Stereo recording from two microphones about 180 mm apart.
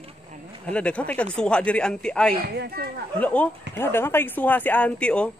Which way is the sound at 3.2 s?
10° left (ahead or behind).